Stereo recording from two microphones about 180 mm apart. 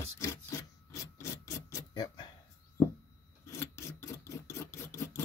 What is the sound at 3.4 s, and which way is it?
Filing, 15° left (ahead or behind).